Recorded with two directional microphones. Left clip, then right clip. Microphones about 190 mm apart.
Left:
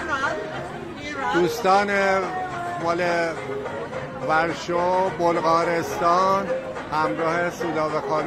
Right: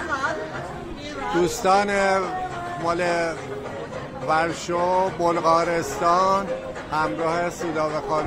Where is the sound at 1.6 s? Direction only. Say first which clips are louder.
Even; 5° right (ahead or behind).